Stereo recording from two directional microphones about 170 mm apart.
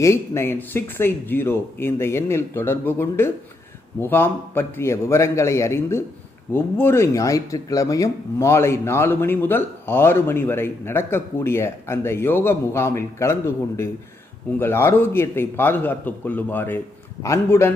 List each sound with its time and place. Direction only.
0.0 s speech: 15° left (ahead or behind)